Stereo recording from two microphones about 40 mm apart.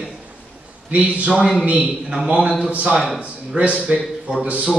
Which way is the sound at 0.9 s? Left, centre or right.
Right.